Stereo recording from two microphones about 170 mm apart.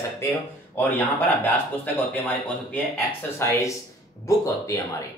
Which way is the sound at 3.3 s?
15° left (ahead or behind).